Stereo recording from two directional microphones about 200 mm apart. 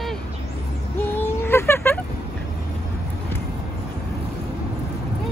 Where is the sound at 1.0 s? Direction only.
10° left (ahead or behind).